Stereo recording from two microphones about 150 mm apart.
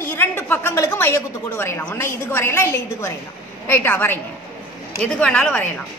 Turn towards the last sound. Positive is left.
turn(degrees=5)  # may be behind; listen again after turning